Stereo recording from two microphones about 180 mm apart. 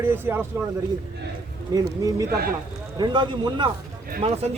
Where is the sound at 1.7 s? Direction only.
20° right (ahead or behind).